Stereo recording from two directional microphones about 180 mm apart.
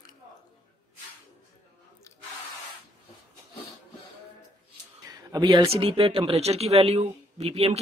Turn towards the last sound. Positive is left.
turn(degrees=-35)  # may be behind; listen again after turning